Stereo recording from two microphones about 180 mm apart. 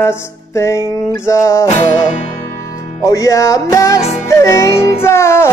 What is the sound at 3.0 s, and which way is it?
Music, 20° left (ahead or behind).